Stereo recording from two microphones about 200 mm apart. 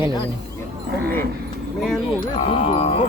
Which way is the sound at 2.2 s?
25° left (ahead or behind).